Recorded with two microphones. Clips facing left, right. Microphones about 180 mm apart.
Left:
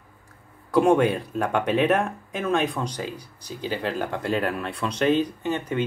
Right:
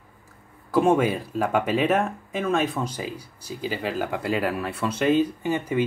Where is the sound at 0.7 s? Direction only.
Centre (ahead or behind).